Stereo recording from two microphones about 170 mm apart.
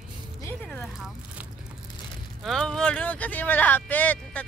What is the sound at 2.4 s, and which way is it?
Speech, 5° left (ahead or behind).